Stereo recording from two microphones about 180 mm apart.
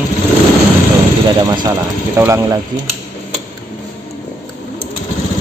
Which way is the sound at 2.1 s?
15° right (ahead or behind).